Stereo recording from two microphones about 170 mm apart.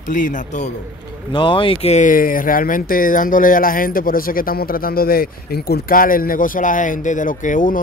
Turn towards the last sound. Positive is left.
turn(degrees=50)  # may be behind; listen again after turning